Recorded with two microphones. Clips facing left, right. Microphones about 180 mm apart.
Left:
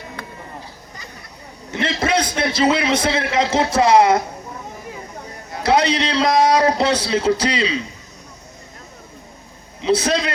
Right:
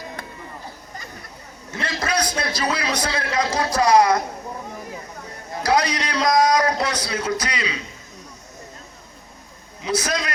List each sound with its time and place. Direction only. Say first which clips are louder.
1.7 s a man's voice: left 5 dB; 25° left (ahead or behind)
5.6 s a man's voice: left 4 dB; 25° left (ahead or behind)
9.8 s a man's voice: left 6 dB; 30° left (ahead or behind)